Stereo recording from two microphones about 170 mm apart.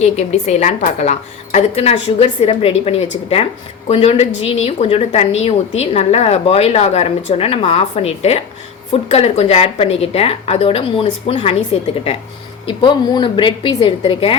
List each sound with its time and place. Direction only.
0.0 s a woman's voice: 40° left (ahead or behind)